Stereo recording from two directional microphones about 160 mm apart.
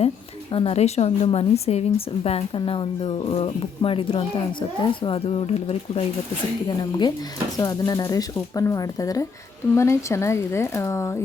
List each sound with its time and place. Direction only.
0.5 s speech: 40° left (ahead or behind)
6.7 s speech: 25° left (ahead or behind)